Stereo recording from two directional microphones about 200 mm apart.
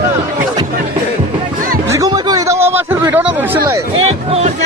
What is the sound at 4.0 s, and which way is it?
Music, 30° right (ahead or behind).